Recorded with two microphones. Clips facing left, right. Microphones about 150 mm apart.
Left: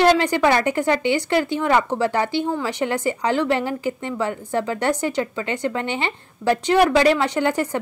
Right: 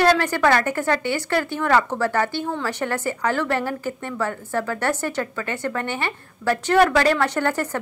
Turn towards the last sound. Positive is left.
turn(degrees=15)  # may be behind; listen again after turning